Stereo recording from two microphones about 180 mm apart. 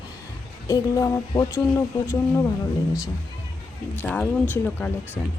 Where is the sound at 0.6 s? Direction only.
20° left (ahead or behind).